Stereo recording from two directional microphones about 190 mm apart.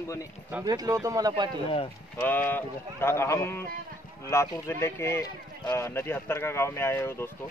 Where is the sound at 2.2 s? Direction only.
10° left (ahead or behind).